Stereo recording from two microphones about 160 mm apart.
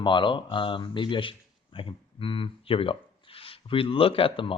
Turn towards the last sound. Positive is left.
turn(degrees=35)  # may be behind; listen again after turning